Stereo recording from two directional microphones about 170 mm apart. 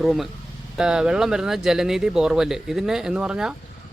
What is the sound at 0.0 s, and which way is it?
A man's voice, centre (ahead or behind).